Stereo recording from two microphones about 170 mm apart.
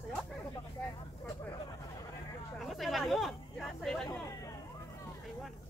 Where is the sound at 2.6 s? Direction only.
Centre (ahead or behind).